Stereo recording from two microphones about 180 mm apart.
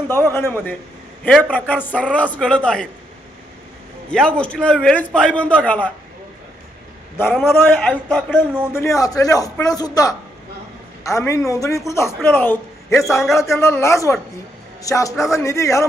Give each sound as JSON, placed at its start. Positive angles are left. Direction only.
{"t": 0.1, "sound": "a man's voice", "side_deg": 15}
{"t": 4.1, "sound": "a man's voice", "side_deg": 5}
{"t": 7.2, "sound": "a man's voice", "side_deg": 10}